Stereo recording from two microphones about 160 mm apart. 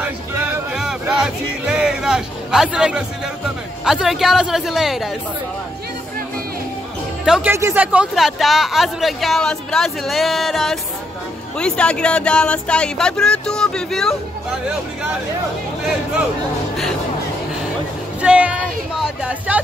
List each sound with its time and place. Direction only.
0.0 s music: 10° right (ahead or behind)
3.8 s speech: 5° right (ahead or behind)
7.2 s speech: 5° right (ahead or behind)
7.5 s speech: 15° right (ahead or behind); by 14.1 s 5° left (ahead or behind)
18.2 s speech: 5° right (ahead or behind)